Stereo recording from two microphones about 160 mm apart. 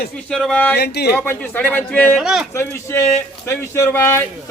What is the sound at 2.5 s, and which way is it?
Speech, 15° left (ahead or behind).